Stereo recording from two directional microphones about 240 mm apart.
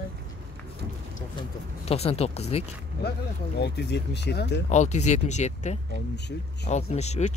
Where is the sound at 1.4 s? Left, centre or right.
Left.